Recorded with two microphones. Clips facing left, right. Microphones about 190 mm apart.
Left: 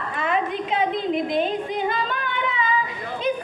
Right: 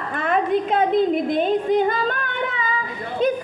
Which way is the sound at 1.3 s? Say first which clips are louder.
Right 5 dB; 50° right (ahead or behind).